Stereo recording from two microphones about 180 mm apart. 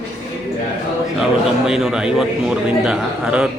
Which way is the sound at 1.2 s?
5° right (ahead or behind).